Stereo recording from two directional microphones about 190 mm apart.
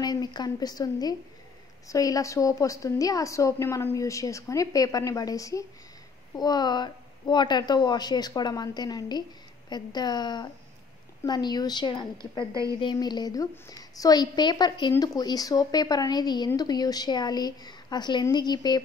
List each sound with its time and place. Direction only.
0.0 s a woman's voice: 20° left (ahead or behind)